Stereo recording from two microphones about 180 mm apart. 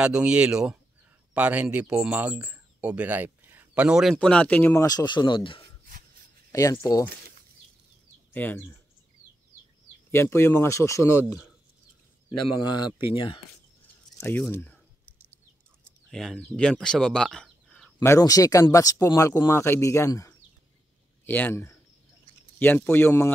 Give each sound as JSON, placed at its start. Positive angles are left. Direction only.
{"t": 0.0, "sound": "speech", "side_deg": -5}
{"t": 5.9, "sound": "a sound", "side_deg": -45}
{"t": 6.5, "sound": "speech", "side_deg": 20}
{"t": 8.3, "sound": "speech", "side_deg": 10}
{"t": 10.1, "sound": "speech", "side_deg": 15}
{"t": 12.6, "sound": "speech", "side_deg": 25}
{"t": 14.2, "sound": "a sound", "side_deg": 10}
{"t": 16.1, "sound": "speech", "side_deg": 5}
{"t": 17.9, "sound": "speech", "side_deg": 15}